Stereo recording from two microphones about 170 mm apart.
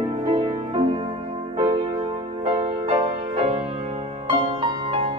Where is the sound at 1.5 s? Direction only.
20° right (ahead or behind).